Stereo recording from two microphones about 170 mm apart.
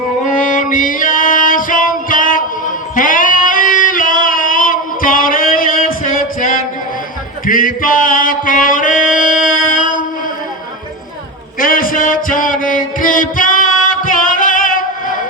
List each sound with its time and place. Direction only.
0.3 s music: 50° left (ahead or behind)
11.6 s music: 55° left (ahead or behind)